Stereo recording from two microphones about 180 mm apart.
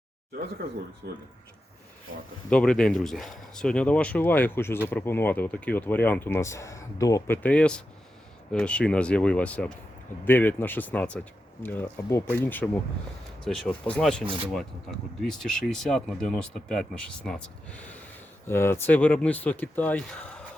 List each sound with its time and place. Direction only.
0.3 s speech: 60° right (ahead or behind)
2.5 s speech: 5° left (ahead or behind)